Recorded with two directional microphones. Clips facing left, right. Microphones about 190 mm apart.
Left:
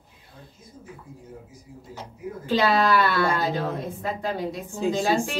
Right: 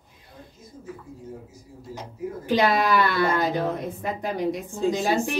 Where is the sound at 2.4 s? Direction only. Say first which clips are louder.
Even; 15° right (ahead or behind).